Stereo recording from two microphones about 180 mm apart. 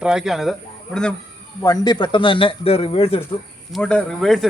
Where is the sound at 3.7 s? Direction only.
5° left (ahead or behind).